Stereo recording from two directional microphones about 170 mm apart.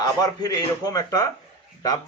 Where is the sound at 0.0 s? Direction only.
20° left (ahead or behind).